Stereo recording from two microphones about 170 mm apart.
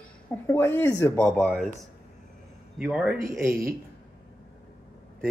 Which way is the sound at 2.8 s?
5° right (ahead or behind).